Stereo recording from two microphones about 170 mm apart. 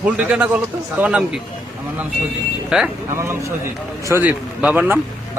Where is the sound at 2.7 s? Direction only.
5° right (ahead or behind).